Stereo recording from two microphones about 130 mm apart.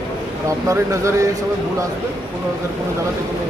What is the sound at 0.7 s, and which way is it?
Speech, 25° right (ahead or behind).